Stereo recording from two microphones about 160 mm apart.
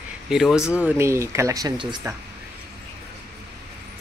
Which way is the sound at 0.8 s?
15° right (ahead or behind).